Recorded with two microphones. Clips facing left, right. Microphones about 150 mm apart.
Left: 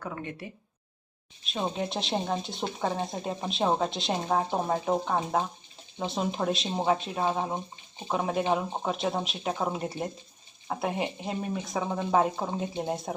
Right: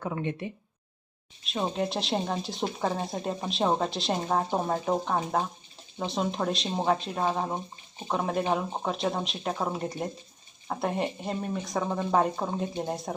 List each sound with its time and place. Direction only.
0.0 s speech: 25° right (ahead or behind)
1.5 s speech: centre (ahead or behind)